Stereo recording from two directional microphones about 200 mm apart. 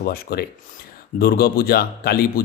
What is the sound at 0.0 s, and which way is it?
Speech, 50° left (ahead or behind).